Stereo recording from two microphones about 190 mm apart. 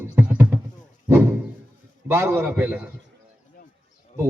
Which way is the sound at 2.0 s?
10° right (ahead or behind).